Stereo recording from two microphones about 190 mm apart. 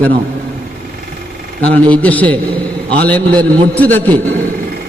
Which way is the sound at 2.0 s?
10° left (ahead or behind).